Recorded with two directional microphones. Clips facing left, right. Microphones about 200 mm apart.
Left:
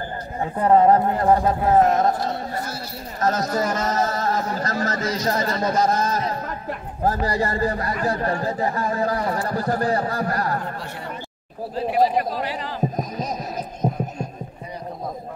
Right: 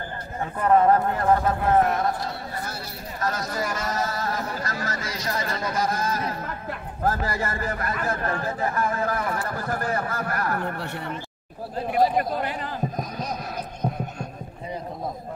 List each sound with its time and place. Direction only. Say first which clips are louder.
0.4 s a man's voice: left 3 dB; 25° left (ahead or behind)
1.9 s speech: left 5 dB; 40° left (ahead or behind)
7.0 s a man's voice: left 4 dB; 15° left (ahead or behind)
9.2 s speech: left 4 dB; 35° left (ahead or behind)
9.6 s a man's voice: left 6 dB; 15° left (ahead or behind)
9.8 s speech: left 5 dB; 35° left (ahead or behind)